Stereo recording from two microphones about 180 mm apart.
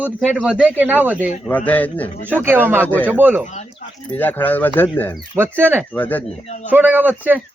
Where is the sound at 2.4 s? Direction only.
10° right (ahead or behind).